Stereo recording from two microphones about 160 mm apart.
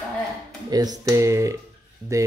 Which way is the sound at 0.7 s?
25° right (ahead or behind).